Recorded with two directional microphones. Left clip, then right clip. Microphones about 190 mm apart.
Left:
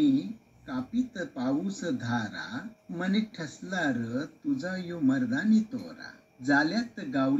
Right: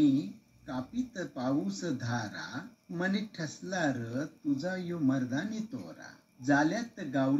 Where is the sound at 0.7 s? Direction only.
40° left (ahead or behind).